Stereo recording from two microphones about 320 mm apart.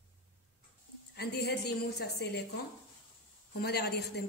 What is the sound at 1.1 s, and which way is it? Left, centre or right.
A woman's voice, left.